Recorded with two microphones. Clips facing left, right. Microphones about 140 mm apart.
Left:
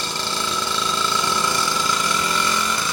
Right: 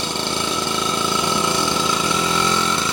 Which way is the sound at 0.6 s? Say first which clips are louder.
Right 3 dB; 60° right (ahead or behind).